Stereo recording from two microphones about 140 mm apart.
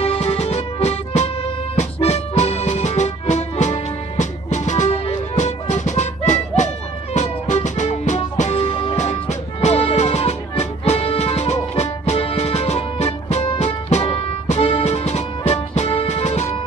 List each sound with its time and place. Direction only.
0.0 s music: 45° left (ahead or behind)